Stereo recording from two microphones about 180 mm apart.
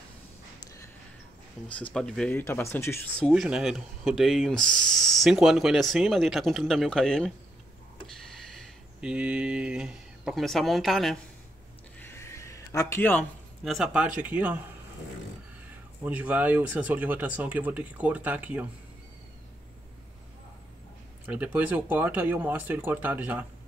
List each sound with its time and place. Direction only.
1.8 s speech: 5° left (ahead or behind)
3.3 s speech: 5° right (ahead or behind)
12.0 s a sound: 15° left (ahead or behind)
13.7 s speech: centre (ahead or behind)
16.0 s speech: 10° right (ahead or behind)
21.3 s speech: 10° right (ahead or behind)